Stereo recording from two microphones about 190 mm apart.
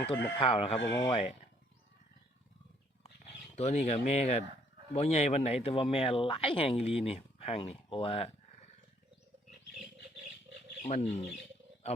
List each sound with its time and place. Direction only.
0.3 s speech: 30° left (ahead or behind)
3.0 s a sound: 35° left (ahead or behind)
4.9 s speech: 35° left (ahead or behind)
10.8 s speech: 35° left (ahead or behind)